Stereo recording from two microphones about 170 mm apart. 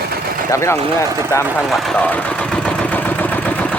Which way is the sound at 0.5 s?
15° left (ahead or behind).